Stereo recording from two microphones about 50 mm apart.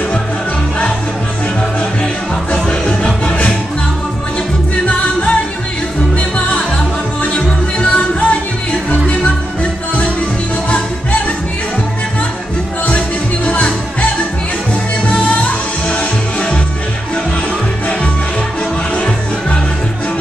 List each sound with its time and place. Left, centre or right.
3.0 s music: centre
4.8 s music: left
13.5 s music: left
15.0 s music: left
18.9 s music: left